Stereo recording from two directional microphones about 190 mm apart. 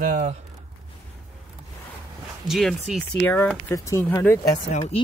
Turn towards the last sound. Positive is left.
turn(degrees=35)  # may be behind; listen again after turning